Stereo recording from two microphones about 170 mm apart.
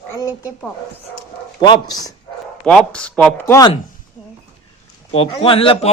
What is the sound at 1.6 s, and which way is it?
Speech, 25° left (ahead or behind).